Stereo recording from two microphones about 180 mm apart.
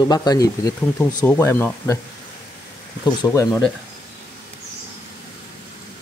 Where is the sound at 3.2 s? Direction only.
20° left (ahead or behind).